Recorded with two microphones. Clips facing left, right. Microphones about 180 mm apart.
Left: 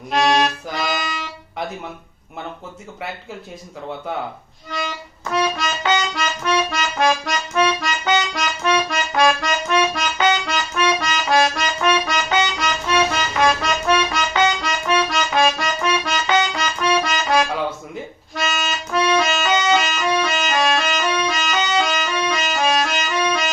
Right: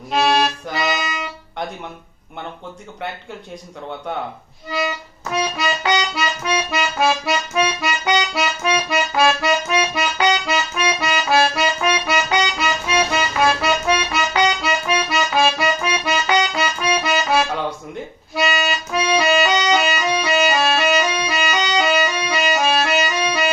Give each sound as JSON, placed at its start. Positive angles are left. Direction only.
{"t": 0.1, "sound": "accordion", "side_deg": -5}
{"t": 4.7, "sound": "music", "side_deg": -5}
{"t": 5.6, "sound": "accordion", "side_deg": -5}
{"t": 19.2, "sound": "music", "side_deg": -10}